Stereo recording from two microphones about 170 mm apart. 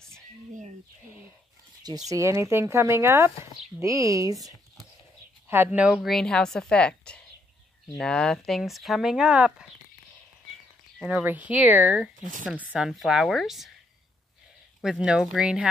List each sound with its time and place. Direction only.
2.0 s a woman's voice: 15° right (ahead or behind)
11.0 s a woman's voice: 10° right (ahead or behind)
14.8 s a woman's voice: 5° right (ahead or behind)